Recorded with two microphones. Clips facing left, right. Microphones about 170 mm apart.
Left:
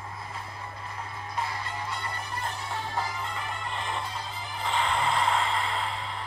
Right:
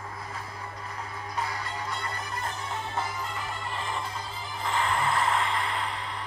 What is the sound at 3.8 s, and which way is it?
Music, 25° left (ahead or behind).